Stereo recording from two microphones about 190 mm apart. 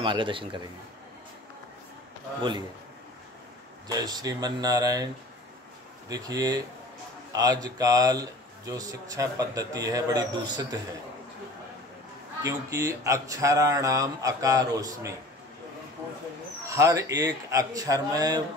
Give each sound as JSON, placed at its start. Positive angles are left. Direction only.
{"t": 0.0, "sound": "a man's voice", "side_deg": -25}
{"t": 3.8, "sound": "a man's voice", "side_deg": -20}
{"t": 12.4, "sound": "speech", "side_deg": -15}
{"t": 16.6, "sound": "speech", "side_deg": -15}